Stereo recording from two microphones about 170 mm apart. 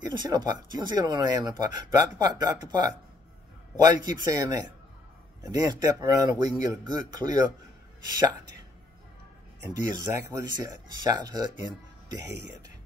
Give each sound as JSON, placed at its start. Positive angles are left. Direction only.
{"t": 0.2, "sound": "speech", "side_deg": -25}
{"t": 9.6, "sound": "speech", "side_deg": -20}